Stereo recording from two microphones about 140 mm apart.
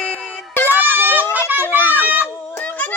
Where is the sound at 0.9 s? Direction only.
15° right (ahead or behind).